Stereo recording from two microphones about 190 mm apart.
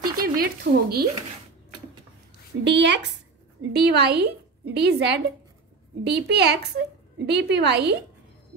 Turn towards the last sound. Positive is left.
turn(degrees=-60)  # may be behind; listen again after turning